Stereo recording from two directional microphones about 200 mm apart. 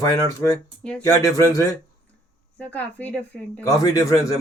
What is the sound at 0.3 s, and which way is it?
A woman's voice, 15° left (ahead or behind).